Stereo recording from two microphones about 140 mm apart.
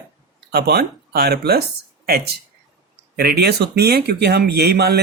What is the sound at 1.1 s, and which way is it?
Speech, 90° right.